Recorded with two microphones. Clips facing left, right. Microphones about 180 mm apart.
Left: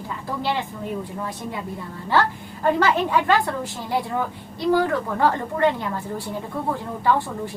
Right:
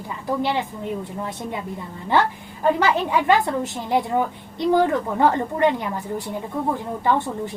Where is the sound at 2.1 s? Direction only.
20° right (ahead or behind).